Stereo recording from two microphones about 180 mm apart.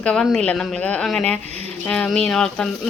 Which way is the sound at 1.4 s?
35° right (ahead or behind).